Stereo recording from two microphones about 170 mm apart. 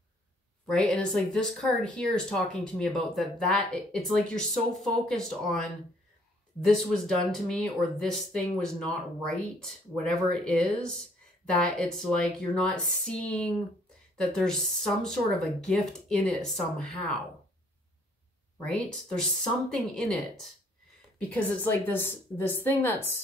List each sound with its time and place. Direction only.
0.7 s speech: 5° left (ahead or behind)
18.6 s speech: 5° left (ahead or behind)
21.5 s speech: 10° left (ahead or behind)